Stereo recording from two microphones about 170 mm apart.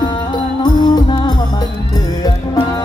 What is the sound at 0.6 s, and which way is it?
Music, 25° left (ahead or behind).